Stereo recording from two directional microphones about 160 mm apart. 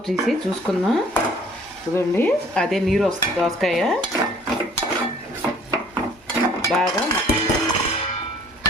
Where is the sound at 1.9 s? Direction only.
15° left (ahead or behind).